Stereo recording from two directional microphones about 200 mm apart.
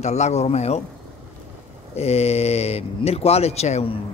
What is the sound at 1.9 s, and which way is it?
Speech, 30° left (ahead or behind).